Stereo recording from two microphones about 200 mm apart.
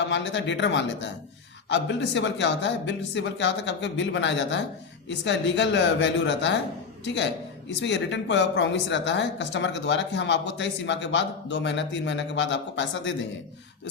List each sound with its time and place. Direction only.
0.1 s a woman's voice: 65° left (ahead or behind)